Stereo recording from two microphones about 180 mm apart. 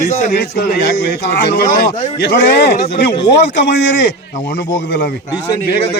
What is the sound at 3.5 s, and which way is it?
Speech, 75° left (ahead or behind).